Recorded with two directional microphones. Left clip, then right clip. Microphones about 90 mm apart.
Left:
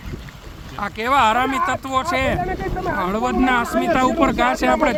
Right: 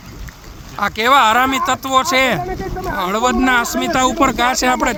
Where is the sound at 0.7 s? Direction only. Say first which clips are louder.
Right 5 dB; 35° right (ahead or behind).